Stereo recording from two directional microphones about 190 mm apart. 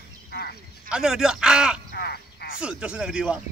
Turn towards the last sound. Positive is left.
turn(degrees=-5)  # may be behind; listen again after turning